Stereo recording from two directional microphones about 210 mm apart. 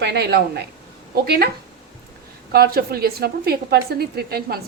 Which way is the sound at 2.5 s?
45° right (ahead or behind).